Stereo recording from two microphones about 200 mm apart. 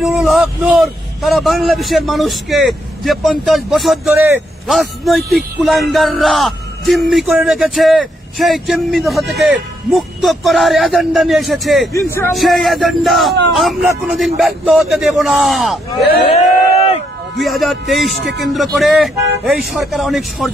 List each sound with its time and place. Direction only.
0.0 s speech: 5° right (ahead or behind)
4.1 s speech: 10° right (ahead or behind)
4.6 s speech: centre (ahead or behind)
11.9 s speech: 15° left (ahead or behind)
12.4 s speech: centre (ahead or behind)
16.2 s a sound: 30° left (ahead or behind)
17.4 s speech: centre (ahead or behind)